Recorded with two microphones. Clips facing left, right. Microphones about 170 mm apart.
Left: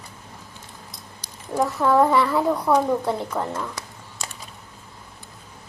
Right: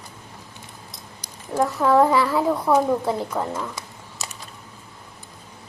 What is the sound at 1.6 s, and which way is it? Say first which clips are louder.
A woman's voice: right 1 dB; centre (ahead or behind).